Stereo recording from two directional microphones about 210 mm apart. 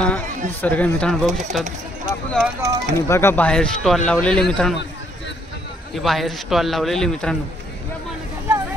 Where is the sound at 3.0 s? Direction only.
10° left (ahead or behind).